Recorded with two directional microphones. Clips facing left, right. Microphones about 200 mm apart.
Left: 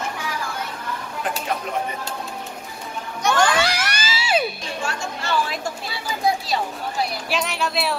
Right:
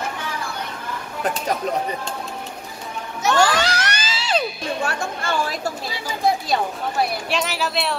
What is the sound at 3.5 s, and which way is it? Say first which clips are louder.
Music: even; 10° left (ahead or behind).